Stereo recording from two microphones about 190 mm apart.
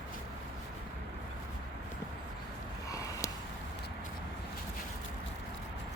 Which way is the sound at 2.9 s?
15° left (ahead or behind).